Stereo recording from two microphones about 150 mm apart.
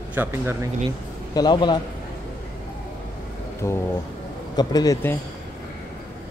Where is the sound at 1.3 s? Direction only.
30° left (ahead or behind).